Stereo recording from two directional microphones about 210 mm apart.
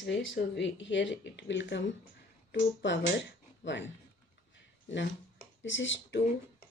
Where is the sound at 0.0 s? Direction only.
55° left (ahead or behind).